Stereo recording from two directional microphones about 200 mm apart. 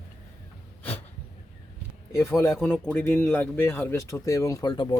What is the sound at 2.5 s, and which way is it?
Speech, centre (ahead or behind).